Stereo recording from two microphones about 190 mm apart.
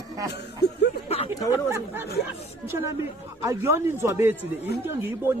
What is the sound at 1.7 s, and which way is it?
Speech, 10° right (ahead or behind).